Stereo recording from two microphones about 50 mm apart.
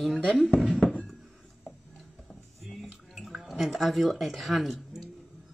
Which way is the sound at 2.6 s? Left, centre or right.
Centre.